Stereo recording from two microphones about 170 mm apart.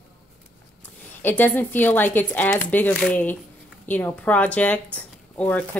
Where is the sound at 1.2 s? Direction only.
10° left (ahead or behind).